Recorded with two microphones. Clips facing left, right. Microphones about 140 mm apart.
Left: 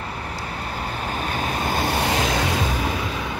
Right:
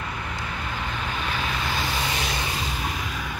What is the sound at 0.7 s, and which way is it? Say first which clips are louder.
Vehicle: left 4 dB; 40° left (ahead or behind).